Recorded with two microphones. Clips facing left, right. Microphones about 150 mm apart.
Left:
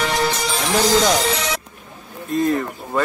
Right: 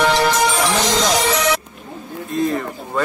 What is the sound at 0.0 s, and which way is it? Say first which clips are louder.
Music: right 5 dB; 85° right.